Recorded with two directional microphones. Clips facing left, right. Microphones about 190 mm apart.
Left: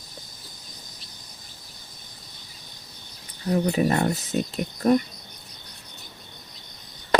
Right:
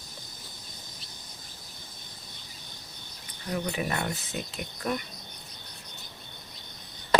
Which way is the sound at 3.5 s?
35° left (ahead or behind).